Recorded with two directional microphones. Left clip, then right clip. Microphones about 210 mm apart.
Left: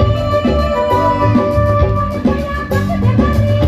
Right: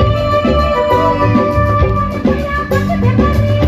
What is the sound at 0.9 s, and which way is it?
Music, 30° right (ahead or behind).